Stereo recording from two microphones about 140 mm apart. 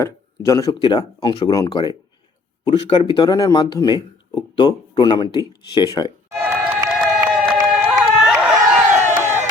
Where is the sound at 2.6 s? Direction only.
40° left (ahead or behind).